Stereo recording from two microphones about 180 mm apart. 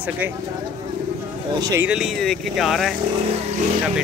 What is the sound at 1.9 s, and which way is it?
Speech, 5° right (ahead or behind).